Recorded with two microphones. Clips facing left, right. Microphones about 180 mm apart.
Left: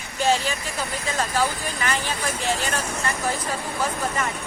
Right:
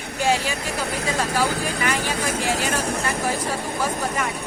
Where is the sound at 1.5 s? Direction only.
75° right (ahead or behind).